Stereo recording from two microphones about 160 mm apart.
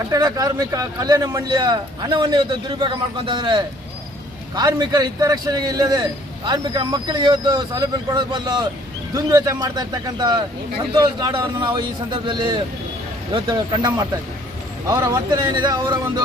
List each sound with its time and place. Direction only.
0.0 s a man's voice: 25° right (ahead or behind)